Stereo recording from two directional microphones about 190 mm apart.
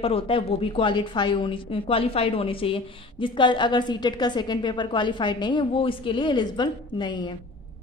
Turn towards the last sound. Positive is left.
turn(degrees=25)  # may be behind; listen again after turning